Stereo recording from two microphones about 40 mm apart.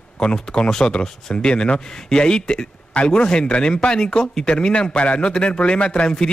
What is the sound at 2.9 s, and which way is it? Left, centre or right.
A man's voice, left.